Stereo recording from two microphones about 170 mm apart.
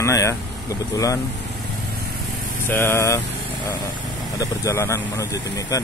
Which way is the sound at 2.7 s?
15° left (ahead or behind).